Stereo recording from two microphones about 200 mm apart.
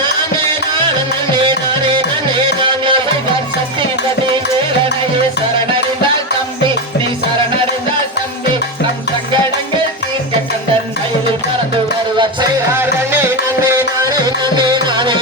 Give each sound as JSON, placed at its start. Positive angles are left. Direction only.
{"t": 2.6, "sound": "music", "side_deg": -25}
{"t": 12.1, "sound": "music", "side_deg": -25}
{"t": 12.7, "sound": "music", "side_deg": -10}